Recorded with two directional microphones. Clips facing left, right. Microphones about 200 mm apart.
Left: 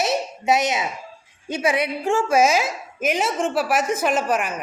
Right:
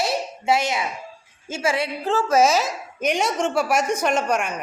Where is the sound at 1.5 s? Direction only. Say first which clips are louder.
Left 2 dB; 20° left (ahead or behind).